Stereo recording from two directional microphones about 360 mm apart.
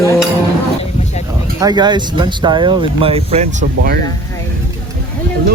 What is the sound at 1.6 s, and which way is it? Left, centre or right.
Speech, centre.